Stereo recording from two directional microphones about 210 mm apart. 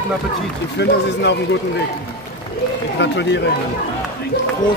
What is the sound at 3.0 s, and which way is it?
Speech, 55° left (ahead or behind).